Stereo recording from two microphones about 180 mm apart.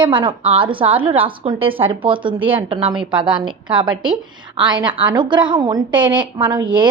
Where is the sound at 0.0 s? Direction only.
25° right (ahead or behind).